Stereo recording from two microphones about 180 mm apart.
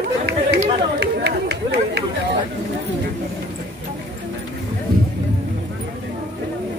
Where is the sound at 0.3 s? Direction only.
70° right (ahead or behind).